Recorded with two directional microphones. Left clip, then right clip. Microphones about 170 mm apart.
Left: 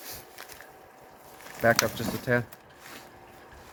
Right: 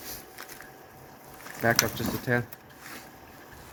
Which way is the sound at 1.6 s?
55° left (ahead or behind).